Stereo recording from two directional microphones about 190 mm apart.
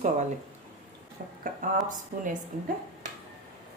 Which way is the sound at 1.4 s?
45° right (ahead or behind).